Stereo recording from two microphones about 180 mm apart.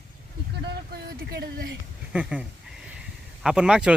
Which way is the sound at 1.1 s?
55° right (ahead or behind).